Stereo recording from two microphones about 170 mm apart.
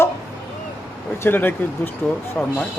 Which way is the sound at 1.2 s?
10° left (ahead or behind).